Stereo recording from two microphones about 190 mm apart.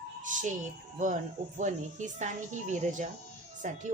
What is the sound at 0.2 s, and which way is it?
Music, 40° right (ahead or behind).